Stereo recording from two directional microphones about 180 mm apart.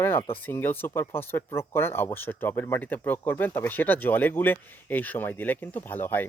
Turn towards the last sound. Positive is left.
turn(degrees=10)  # may be behind; listen again after turning